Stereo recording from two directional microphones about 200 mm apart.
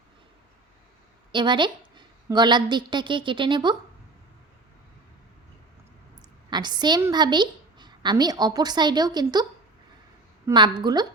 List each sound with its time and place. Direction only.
1.3 s a woman's voice: 25° right (ahead or behind)
6.5 s a woman's voice: 20° right (ahead or behind)